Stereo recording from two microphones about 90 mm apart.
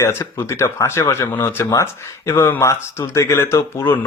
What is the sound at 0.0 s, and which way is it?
Speech, 25° left (ahead or behind).